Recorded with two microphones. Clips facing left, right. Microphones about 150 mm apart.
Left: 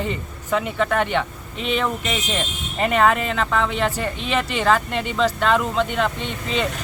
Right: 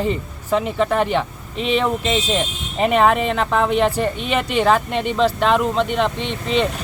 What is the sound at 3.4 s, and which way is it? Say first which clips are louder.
Speech: right 1 dB; 30° right (ahead or behind).